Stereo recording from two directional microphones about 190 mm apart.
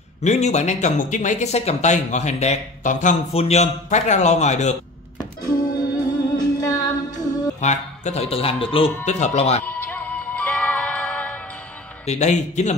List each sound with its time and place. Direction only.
0.2 s speech: 35° left (ahead or behind)
5.4 s music: 20° left (ahead or behind)
7.6 s speech: 40° left (ahead or behind)
9.7 s music: 10° left (ahead or behind)
12.1 s speech: 40° left (ahead or behind)